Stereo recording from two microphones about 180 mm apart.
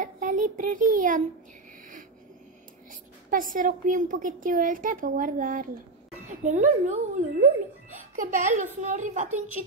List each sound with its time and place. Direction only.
0.0 s child singing: 45° right (ahead or behind)
2.9 s a woman's voice: 50° right (ahead or behind)